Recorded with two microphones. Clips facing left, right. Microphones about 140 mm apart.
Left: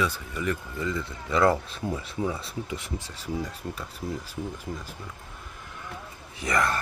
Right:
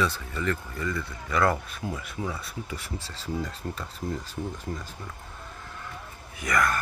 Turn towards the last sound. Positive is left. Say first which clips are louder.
# even
turn(degrees=25)  # may be behind; listen again after turning